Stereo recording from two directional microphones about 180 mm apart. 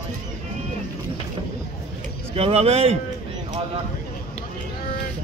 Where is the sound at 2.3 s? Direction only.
35° right (ahead or behind).